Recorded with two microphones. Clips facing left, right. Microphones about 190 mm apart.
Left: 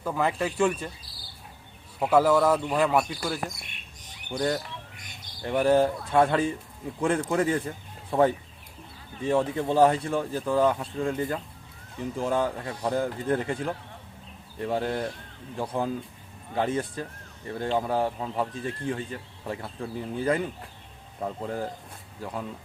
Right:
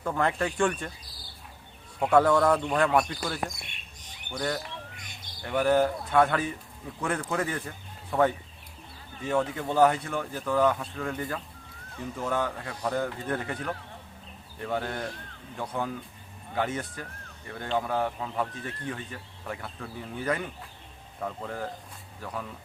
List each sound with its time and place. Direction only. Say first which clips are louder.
0.0 s a man's voice: left 1 dB; 5° left (ahead or behind)
2.0 s a man's voice: left 1 dB; 5° left (ahead or behind)
5.4 s speech: left 2 dB; 30° left (ahead or behind)
9.2 s speech: left 3 dB; 30° left (ahead or behind)